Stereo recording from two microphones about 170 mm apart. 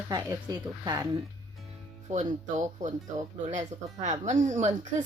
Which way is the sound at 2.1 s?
45° right (ahead or behind).